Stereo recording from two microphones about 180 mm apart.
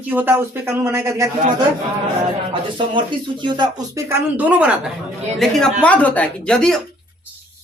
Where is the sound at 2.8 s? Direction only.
25° right (ahead or behind).